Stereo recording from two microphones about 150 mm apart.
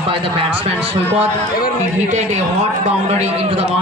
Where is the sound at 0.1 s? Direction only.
35° right (ahead or behind).